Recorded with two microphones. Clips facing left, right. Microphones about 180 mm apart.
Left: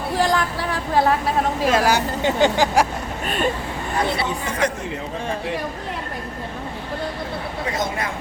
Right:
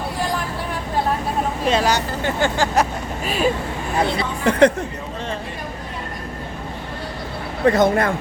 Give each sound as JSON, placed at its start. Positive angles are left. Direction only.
{"t": 0.2, "sound": "a sound", "side_deg": 90}
{"t": 1.6, "sound": "speech", "side_deg": 5}
{"t": 3.2, "sound": "speech", "side_deg": -5}
{"t": 7.6, "sound": "speech", "side_deg": -60}